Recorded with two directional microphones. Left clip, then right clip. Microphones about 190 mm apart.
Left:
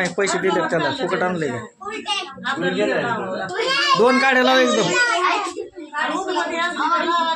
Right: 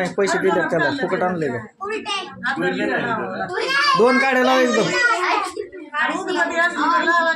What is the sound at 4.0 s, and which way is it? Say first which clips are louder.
Speech: even; 10° right (ahead or behind).